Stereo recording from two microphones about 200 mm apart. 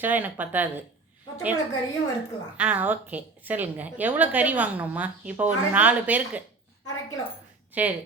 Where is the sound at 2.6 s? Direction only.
5° right (ahead or behind).